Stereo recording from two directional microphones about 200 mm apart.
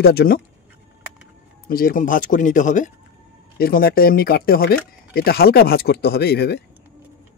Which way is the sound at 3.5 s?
50° left (ahead or behind).